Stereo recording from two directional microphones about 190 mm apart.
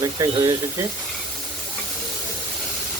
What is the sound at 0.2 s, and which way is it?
Speech, 15° right (ahead or behind).